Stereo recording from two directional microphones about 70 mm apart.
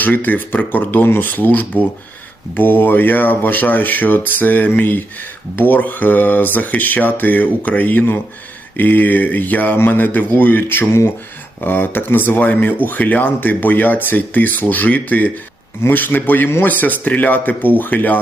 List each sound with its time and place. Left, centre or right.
0.0 s speech: left